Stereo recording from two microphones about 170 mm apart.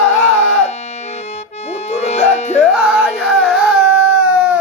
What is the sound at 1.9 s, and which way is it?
Music, 40° left (ahead or behind).